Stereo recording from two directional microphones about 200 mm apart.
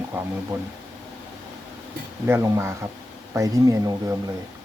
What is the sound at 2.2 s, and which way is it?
Speech, 15° right (ahead or behind).